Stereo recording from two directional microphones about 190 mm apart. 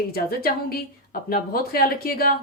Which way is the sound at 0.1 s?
55° left (ahead or behind).